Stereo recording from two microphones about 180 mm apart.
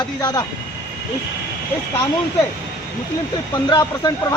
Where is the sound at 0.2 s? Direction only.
20° left (ahead or behind).